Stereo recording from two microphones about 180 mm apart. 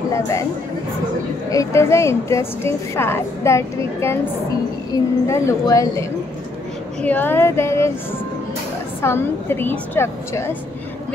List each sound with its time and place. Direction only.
0.1 s a woman's voice: 15° left (ahead or behind)
1.5 s a woman's voice: 15° left (ahead or behind)
7.1 s a woman's voice: 10° left (ahead or behind)
9.0 s a woman's voice: 15° left (ahead or behind)